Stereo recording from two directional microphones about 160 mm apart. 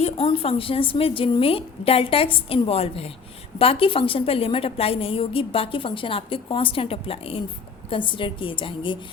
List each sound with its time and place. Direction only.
0.0 s a woman's voice: 35° left (ahead or behind)